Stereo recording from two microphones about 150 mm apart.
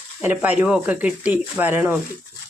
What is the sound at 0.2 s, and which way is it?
Speech, 10° right (ahead or behind).